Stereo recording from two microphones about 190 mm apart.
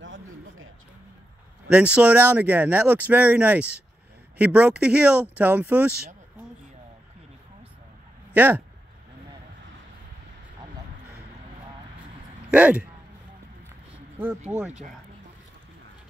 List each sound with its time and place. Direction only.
0.0 s a sound: 85° right
1.7 s speech: 5° right (ahead or behind)
8.4 s speech: 10° right (ahead or behind)
12.4 s speech: 5° right (ahead or behind)
14.1 s speech: 5° right (ahead or behind)